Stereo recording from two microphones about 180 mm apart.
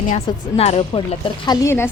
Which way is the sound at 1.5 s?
15° left (ahead or behind).